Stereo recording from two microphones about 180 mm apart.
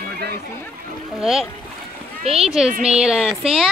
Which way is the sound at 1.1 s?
Centre (ahead or behind).